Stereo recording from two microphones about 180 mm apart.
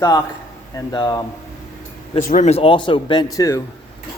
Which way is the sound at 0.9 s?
20° left (ahead or behind).